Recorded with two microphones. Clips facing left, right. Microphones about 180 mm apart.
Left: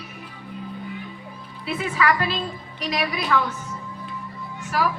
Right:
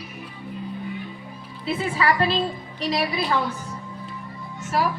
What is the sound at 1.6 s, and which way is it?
A woman's voice, 30° right (ahead or behind).